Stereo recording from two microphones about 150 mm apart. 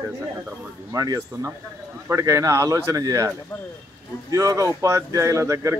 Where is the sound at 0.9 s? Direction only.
20° right (ahead or behind).